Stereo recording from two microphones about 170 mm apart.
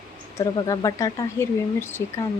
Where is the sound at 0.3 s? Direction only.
20° left (ahead or behind).